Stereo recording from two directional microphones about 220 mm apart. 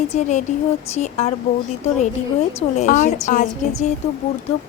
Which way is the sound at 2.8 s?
35° left (ahead or behind).